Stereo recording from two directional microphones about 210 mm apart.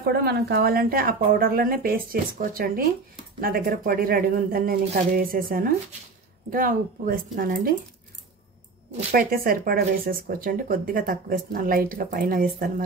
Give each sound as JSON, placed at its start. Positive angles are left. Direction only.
{"t": 0.0, "sound": "speech", "side_deg": -50}
{"t": 9.1, "sound": "speech", "side_deg": -45}